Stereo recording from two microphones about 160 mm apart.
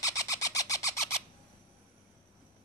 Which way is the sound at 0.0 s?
20° left (ahead or behind).